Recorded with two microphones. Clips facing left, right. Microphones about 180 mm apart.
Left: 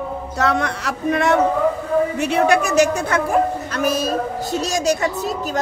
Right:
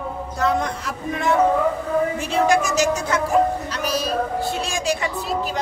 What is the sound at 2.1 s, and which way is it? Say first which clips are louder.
A woman's voice: left 2 dB; 65° left (ahead or behind).